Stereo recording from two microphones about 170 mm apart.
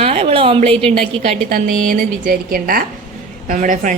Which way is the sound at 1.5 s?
50° right (ahead or behind).